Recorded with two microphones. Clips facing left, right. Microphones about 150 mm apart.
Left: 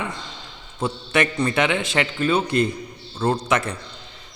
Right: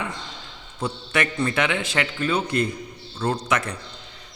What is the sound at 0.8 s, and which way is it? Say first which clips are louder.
A man's voice: left 3 dB; 25° left (ahead or behind).